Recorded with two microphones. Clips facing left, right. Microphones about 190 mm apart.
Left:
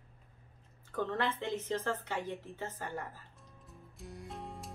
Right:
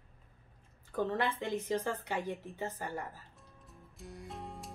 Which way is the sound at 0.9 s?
10° right (ahead or behind).